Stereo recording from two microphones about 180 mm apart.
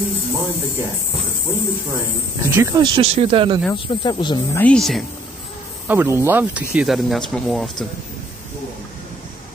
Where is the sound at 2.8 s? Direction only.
30° right (ahead or behind).